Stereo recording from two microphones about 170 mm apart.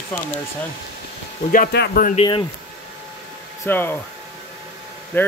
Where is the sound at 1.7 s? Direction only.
85° left.